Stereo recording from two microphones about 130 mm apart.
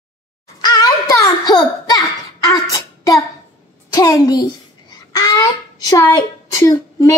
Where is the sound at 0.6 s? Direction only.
30° left (ahead or behind).